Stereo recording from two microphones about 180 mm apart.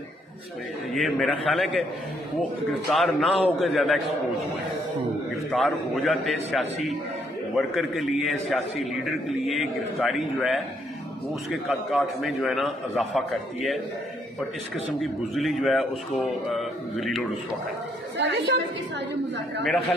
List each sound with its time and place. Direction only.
0.9 s a man's voice: centre (ahead or behind)
2.9 s a man's voice: centre (ahead or behind)
5.5 s a man's voice: centre (ahead or behind)
11.9 s a man's voice: centre (ahead or behind)
15.0 s a man's voice: centre (ahead or behind)
18.1 s a woman's voice: 80° right
18.9 s chatter: 75° right (ahead or behind)